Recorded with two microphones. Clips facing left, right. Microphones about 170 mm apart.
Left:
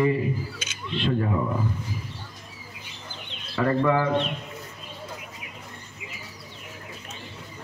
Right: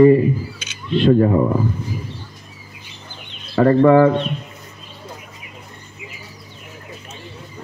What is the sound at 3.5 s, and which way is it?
Speech, 40° right (ahead or behind).